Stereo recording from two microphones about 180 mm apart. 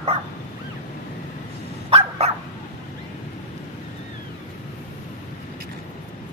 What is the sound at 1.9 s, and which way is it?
Dog, 35° right (ahead or behind).